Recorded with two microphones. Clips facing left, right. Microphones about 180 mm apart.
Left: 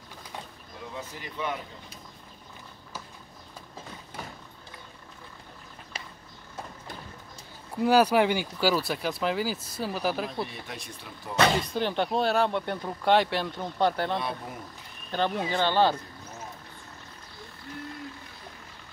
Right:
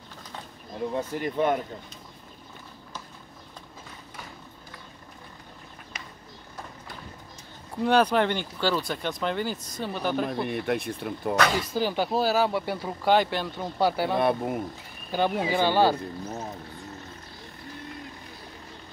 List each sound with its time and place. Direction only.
0.9 s speech: 50° right (ahead or behind)
5.9 s bird: 30° left (ahead or behind)
7.7 s speech: 5° left (ahead or behind)
10.2 s speech: 60° right (ahead or behind)
11.6 s speech: 5° right (ahead or behind)
14.1 s speech: 55° right (ahead or behind)
15.0 s speech: 10° right (ahead or behind)